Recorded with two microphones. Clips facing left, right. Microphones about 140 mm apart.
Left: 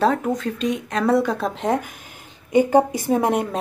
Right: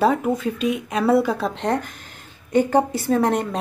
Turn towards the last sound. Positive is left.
turn(degrees=10)  # may be behind; listen again after turning